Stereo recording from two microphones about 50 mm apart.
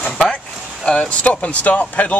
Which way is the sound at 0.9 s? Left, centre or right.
Left.